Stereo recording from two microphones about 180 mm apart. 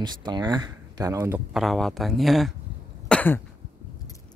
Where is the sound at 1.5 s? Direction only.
Centre (ahead or behind).